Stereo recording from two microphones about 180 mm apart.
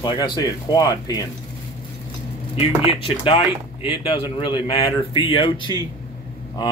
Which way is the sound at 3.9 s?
30° left (ahead or behind).